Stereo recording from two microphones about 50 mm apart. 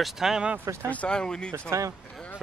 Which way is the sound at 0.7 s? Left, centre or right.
Right.